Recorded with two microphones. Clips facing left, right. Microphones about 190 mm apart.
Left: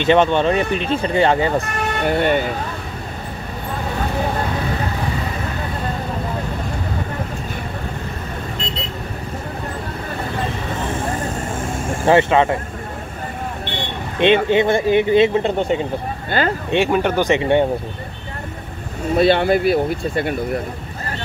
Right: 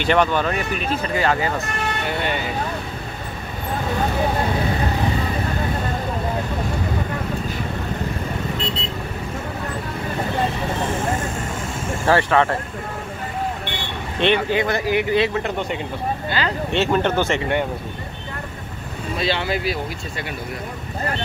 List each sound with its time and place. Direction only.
0.0 s speech: 20° left (ahead or behind)
2.0 s speech: 50° left (ahead or behind)
12.1 s speech: 20° left (ahead or behind)
14.2 s speech: 25° left (ahead or behind)
16.3 s speech: 50° left (ahead or behind)
16.7 s speech: 10° left (ahead or behind)
19.1 s speech: 55° left (ahead or behind)